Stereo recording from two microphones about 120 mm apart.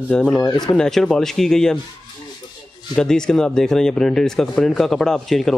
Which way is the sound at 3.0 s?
5° left (ahead or behind).